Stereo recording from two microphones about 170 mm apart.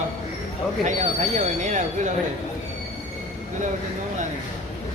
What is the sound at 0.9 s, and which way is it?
Speech, 45° right (ahead or behind).